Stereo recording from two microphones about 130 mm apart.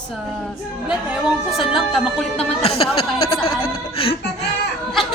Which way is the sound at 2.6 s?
50° left (ahead or behind).